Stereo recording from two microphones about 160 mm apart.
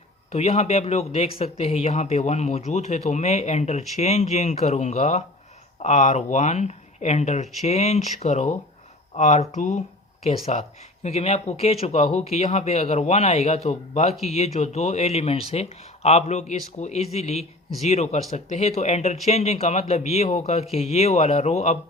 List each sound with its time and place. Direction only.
0.3 s speech: 40° left (ahead or behind)